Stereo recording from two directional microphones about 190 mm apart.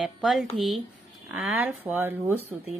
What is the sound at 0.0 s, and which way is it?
Speech, centre (ahead or behind).